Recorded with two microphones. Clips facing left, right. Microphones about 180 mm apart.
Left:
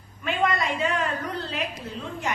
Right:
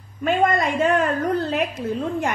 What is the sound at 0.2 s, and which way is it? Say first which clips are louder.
A woman's voice: right 6 dB; 45° right (ahead or behind).